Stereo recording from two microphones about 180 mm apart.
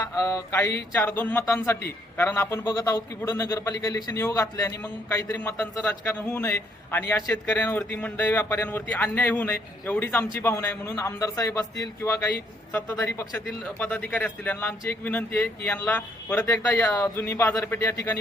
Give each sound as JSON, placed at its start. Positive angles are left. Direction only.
{"t": 0.0, "sound": "mantra", "side_deg": 20}
{"t": 0.9, "sound": "a man's voice", "side_deg": 10}